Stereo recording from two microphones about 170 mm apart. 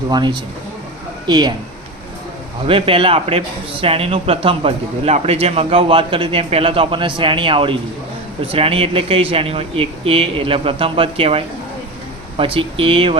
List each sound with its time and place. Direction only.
0.1 s speech: 25° right (ahead or behind)
2.6 s a man's voice: 30° right (ahead or behind)